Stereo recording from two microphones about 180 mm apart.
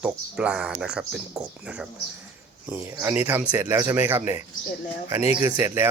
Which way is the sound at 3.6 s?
20° right (ahead or behind).